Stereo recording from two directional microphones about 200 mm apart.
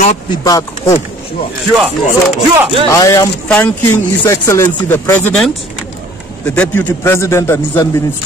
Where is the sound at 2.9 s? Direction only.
15° left (ahead or behind).